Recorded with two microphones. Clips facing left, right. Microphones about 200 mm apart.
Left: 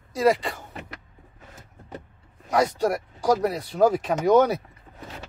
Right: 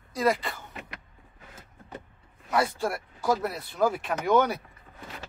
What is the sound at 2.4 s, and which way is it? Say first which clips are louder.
Speech: left 5 dB; 40° left (ahead or behind).